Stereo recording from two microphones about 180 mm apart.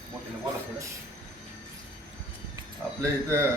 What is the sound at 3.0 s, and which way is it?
Speech, 15° right (ahead or behind).